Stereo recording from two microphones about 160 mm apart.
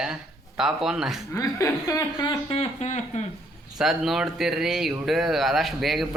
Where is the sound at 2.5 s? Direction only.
40° left (ahead or behind).